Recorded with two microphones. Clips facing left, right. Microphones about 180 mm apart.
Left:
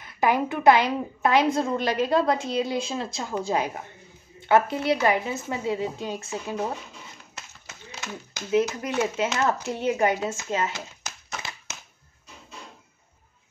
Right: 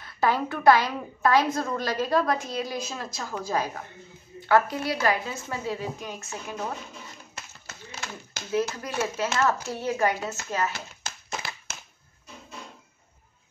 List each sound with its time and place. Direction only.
0.0 s a woman's voice: 15° left (ahead or behind)
7.3 s speech: 20° left (ahead or behind)